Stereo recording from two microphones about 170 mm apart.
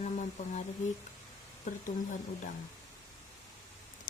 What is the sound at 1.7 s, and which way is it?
Speech, 50° left (ahead or behind).